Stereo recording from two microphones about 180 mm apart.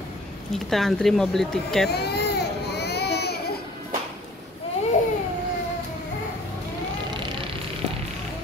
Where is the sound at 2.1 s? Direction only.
65° left (ahead or behind).